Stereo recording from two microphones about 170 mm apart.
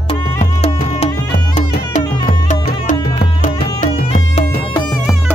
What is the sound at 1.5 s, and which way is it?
Music, 45° left (ahead or behind).